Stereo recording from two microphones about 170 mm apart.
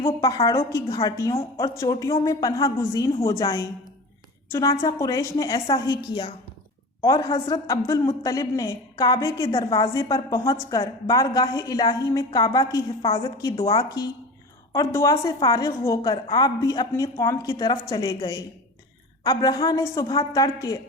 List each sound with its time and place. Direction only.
0.2 s a woman's voice: 20° left (ahead or behind)